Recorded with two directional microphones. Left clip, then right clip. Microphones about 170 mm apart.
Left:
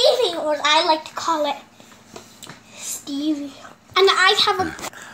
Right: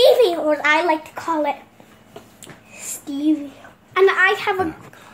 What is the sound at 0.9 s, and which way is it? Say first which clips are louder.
Speech: left 1 dB; 20° right (ahead or behind).